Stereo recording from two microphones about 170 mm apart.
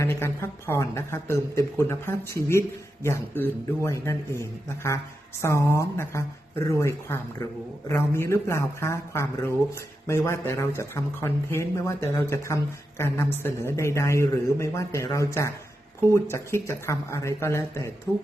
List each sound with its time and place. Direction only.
0.0 s speech: 15° left (ahead or behind)